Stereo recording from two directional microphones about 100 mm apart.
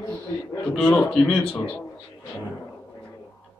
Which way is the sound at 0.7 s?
10° left (ahead or behind).